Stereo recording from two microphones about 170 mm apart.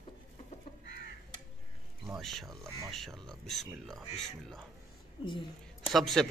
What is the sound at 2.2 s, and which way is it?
Speech, centre (ahead or behind).